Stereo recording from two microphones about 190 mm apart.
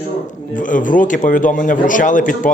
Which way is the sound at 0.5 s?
45° left (ahead or behind).